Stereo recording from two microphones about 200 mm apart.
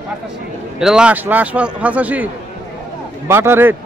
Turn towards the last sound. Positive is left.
turn(degrees=-10)  # may be behind; listen again after turning